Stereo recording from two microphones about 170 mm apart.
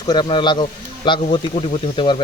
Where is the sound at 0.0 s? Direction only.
25° left (ahead or behind).